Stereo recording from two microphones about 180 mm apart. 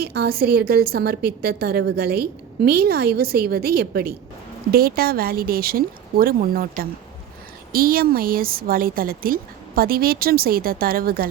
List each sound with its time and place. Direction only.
0.0 s a woman's voice: 60° right (ahead or behind)